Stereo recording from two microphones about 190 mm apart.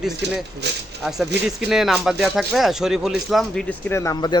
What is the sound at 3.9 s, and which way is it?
Speech, 15° left (ahead or behind).